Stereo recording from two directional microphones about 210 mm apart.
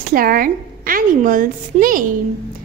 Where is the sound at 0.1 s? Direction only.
45° right (ahead or behind).